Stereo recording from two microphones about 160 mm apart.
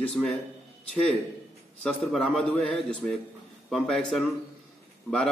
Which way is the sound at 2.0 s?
Centre (ahead or behind).